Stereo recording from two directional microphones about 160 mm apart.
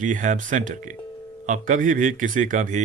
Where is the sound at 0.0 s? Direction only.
55° right (ahead or behind).